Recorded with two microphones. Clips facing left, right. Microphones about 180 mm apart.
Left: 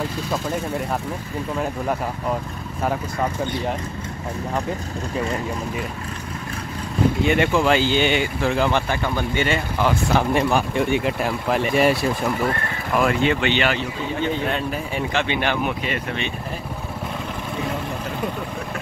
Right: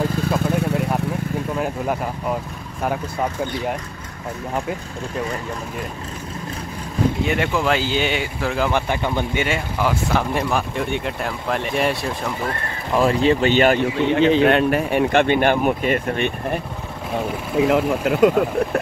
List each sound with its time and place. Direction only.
1.6 s speech: 5° right (ahead or behind)
7.2 s speech: centre (ahead or behind)
8.8 s speech: 15° right (ahead or behind); by 12.4 s centre (ahead or behind)
12.9 s speech: 35° right (ahead or behind)
14.0 s speech: 85° right; by 16.3 s 50° right (ahead or behind)
17.6 s speech: 75° right (ahead or behind)